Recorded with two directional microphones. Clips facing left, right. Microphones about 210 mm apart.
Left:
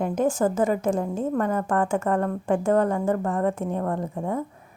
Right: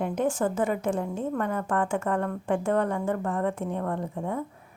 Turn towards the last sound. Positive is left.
turn(degrees=40)  # may be behind; listen again after turning